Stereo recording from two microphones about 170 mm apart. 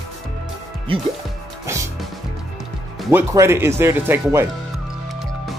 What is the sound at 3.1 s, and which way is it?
Speech, 15° right (ahead or behind).